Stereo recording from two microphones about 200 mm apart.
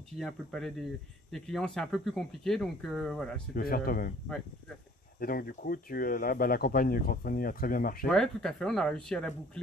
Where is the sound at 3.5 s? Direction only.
45° left (ahead or behind).